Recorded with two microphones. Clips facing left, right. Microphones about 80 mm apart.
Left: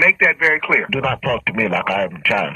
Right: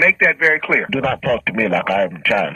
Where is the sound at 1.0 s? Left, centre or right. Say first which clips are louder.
Right 2 dB; right.